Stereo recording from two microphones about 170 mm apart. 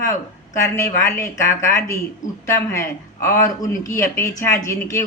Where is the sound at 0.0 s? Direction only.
20° left (ahead or behind).